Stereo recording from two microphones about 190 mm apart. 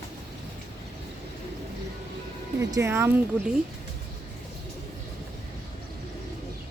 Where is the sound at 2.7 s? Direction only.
15° right (ahead or behind).